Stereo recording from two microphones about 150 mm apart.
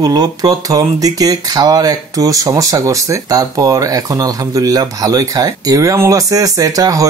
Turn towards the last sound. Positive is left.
turn(degrees=-20)  # may be behind; listen again after turning